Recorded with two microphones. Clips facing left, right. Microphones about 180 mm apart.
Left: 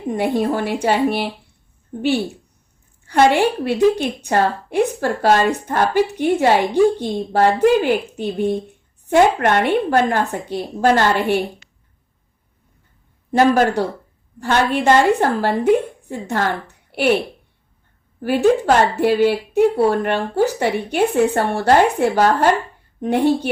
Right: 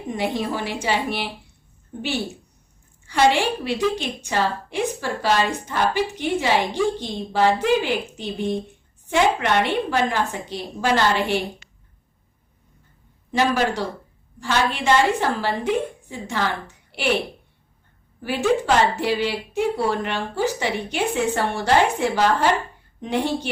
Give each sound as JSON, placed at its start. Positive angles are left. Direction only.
{"t": 0.1, "sound": "a woman's voice", "side_deg": 55}
{"t": 13.3, "sound": "a woman's voice", "side_deg": 50}
{"t": 18.2, "sound": "a woman's voice", "side_deg": 55}